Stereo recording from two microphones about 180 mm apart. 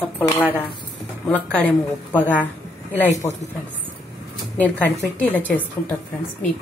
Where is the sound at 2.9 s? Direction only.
15° left (ahead or behind).